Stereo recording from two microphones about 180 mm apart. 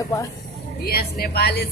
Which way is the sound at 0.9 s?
60° left (ahead or behind).